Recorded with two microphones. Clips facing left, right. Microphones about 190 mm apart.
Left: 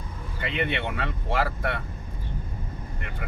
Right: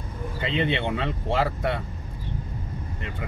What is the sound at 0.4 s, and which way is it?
Speech, 20° right (ahead or behind).